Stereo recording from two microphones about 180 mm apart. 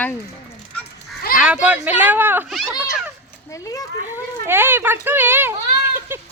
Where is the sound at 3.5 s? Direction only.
20° left (ahead or behind).